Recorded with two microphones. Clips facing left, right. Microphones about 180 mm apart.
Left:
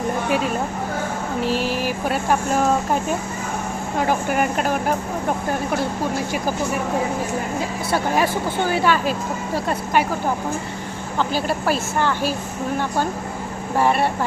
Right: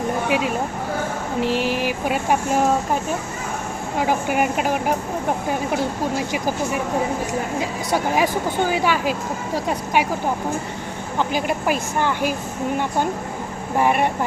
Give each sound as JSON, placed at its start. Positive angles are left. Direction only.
{"t": 0.3, "sound": "speech", "side_deg": -15}
{"t": 3.9, "sound": "speech", "side_deg": -10}
{"t": 7.9, "sound": "speech", "side_deg": -15}
{"t": 11.2, "sound": "speech", "side_deg": -15}
{"t": 13.7, "sound": "speech", "side_deg": -15}